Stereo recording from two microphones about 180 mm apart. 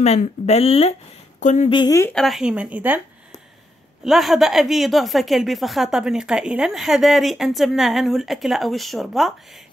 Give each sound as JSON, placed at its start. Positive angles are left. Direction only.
{"t": 0.0, "sound": "speech", "side_deg": 35}
{"t": 1.7, "sound": "speech", "side_deg": 20}
{"t": 2.1, "sound": "a woman's voice", "side_deg": 0}
{"t": 4.0, "sound": "a woman's voice", "side_deg": 0}